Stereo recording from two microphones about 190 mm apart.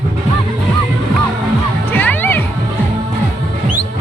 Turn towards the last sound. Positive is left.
turn(degrees=10)  # may be behind; listen again after turning